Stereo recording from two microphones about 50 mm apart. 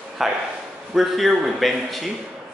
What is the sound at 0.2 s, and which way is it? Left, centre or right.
Speech, centre.